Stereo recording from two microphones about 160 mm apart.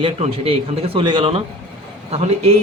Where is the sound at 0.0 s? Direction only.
35° right (ahead or behind).